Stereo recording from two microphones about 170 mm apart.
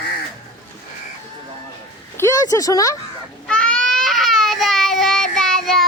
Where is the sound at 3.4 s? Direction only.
5° left (ahead or behind).